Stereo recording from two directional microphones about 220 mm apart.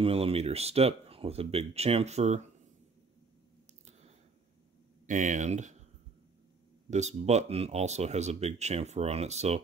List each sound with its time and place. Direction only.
0.0 s speech: 25° right (ahead or behind)
5.0 s speech: 35° right (ahead or behind)
6.9 s speech: 30° right (ahead or behind)